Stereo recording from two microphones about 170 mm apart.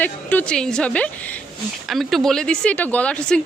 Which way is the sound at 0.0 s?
10° left (ahead or behind).